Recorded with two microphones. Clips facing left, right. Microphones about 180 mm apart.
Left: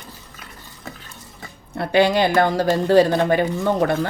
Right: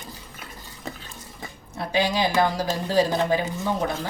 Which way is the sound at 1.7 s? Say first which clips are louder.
Left 7 dB; 65° left (ahead or behind).